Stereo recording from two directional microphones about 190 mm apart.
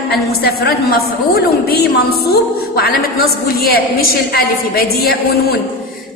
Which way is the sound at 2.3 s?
55° left (ahead or behind).